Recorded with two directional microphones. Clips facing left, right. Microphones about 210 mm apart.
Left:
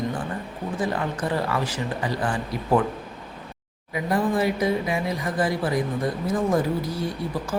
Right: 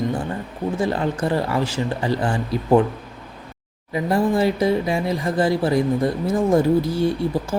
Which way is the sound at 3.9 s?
30° right (ahead or behind).